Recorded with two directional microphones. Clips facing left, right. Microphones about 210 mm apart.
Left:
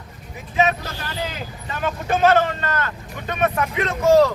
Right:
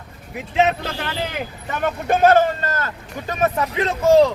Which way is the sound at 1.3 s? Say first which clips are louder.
Right 4 dB; 55° right (ahead or behind).